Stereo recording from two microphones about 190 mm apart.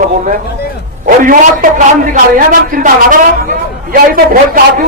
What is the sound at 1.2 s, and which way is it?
Speech, 45° right (ahead or behind).